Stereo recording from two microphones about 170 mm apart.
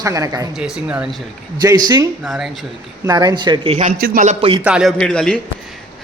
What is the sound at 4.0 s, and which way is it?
Speech, 60° right (ahead or behind).